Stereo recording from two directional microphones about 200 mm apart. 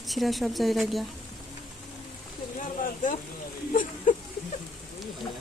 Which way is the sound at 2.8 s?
40° left (ahead or behind).